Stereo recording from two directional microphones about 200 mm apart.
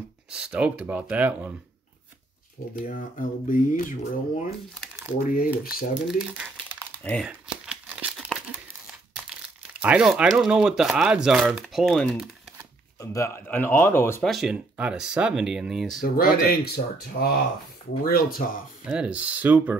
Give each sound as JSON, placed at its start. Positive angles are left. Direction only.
{"t": 0.3, "sound": "speech", "side_deg": -5}
{"t": 2.8, "sound": "speech", "side_deg": 45}
{"t": 6.0, "sound": "speech", "side_deg": -5}
{"t": 7.0, "sound": "speech", "side_deg": 5}
{"t": 7.2, "sound": "crumpling", "side_deg": -5}
{"t": 9.8, "sound": "speech", "side_deg": -5}
{"t": 13.0, "sound": "speech", "side_deg": 15}
{"t": 14.2, "sound": "speech", "side_deg": 0}
{"t": 16.0, "sound": "speech", "side_deg": 45}
{"t": 18.9, "sound": "speech", "side_deg": -5}